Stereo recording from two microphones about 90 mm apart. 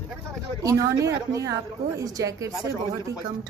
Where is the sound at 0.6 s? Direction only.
40° right (ahead or behind).